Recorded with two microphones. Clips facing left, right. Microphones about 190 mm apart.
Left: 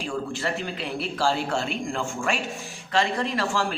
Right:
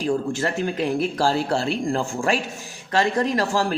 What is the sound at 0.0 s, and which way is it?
A man's voice, 45° right (ahead or behind).